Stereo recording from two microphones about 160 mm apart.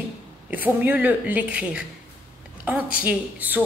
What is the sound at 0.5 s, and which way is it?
A woman's voice, 10° right (ahead or behind).